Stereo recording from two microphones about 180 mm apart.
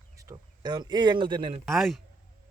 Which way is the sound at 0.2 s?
20° right (ahead or behind).